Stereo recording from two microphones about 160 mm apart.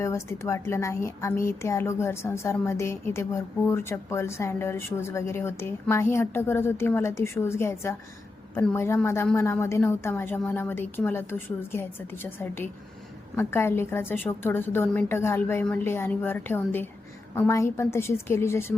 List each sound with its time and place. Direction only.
0.0 s a woman's voice: 15° left (ahead or behind)